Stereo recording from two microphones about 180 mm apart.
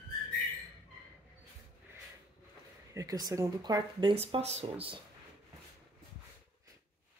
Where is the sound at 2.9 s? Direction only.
20° right (ahead or behind).